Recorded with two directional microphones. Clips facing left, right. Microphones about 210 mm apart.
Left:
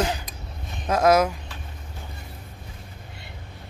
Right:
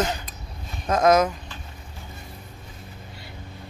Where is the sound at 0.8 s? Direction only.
10° left (ahead or behind).